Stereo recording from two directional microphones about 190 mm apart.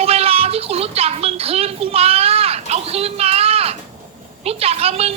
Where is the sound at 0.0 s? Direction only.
30° right (ahead or behind).